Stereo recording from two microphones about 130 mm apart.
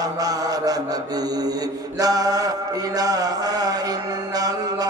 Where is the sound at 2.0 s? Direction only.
30° right (ahead or behind).